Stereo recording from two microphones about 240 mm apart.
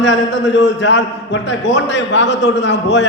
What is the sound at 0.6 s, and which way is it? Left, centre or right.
A man's voice, left.